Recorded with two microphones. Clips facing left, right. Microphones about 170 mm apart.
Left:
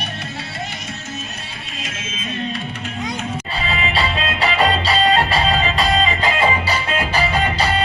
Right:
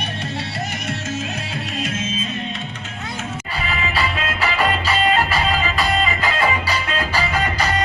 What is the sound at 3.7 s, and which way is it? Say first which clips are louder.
Music: left 2 dB; 25° left (ahead or behind).